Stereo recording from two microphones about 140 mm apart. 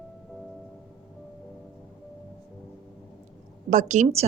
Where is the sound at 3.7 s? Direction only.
60° right (ahead or behind).